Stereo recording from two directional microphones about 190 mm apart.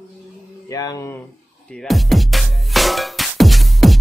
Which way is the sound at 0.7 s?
20° left (ahead or behind).